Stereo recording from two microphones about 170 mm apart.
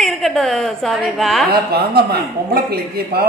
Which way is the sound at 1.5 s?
65° right (ahead or behind).